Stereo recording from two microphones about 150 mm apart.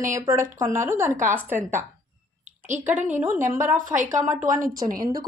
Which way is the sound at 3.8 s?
55° right (ahead or behind).